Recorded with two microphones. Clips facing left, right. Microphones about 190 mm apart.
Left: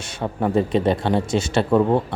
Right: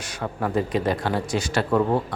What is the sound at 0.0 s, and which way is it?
A man's voice, 25° left (ahead or behind).